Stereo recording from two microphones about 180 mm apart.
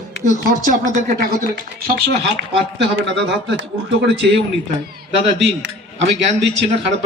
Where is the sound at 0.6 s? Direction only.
45° right (ahead or behind).